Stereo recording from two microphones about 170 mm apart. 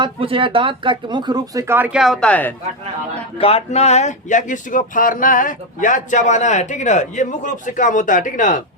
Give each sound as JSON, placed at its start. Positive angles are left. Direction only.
{"t": 0.0, "sound": "speech", "side_deg": -30}
{"t": 3.3, "sound": "speech", "side_deg": 35}